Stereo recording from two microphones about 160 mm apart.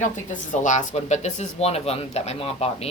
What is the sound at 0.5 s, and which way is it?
Speech, 50° left (ahead or behind).